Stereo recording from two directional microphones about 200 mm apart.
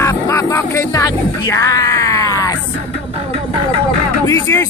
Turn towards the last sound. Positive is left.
turn(degrees=15)  # may be behind; listen again after turning